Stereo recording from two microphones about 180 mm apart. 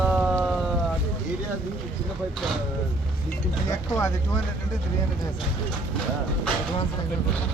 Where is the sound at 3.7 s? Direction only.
15° left (ahead or behind).